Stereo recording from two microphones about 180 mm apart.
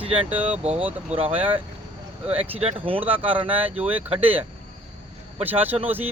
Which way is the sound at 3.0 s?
10° right (ahead or behind).